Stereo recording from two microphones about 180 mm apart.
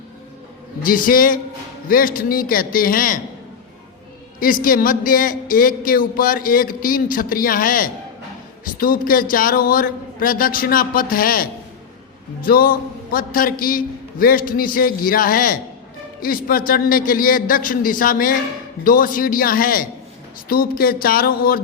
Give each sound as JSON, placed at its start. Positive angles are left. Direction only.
{"t": 0.8, "sound": "speech", "side_deg": 50}
{"t": 4.4, "sound": "speech", "side_deg": 50}